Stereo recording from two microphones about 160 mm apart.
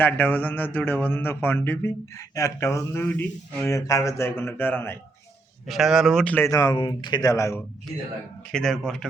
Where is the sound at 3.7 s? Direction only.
20° left (ahead or behind).